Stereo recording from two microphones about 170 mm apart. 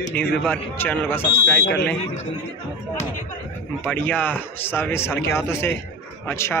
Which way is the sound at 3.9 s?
10° left (ahead or behind).